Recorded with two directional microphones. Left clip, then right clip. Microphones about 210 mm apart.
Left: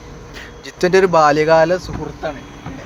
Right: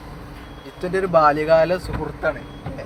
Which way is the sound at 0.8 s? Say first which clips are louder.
Left 5 dB; 55° left (ahead or behind).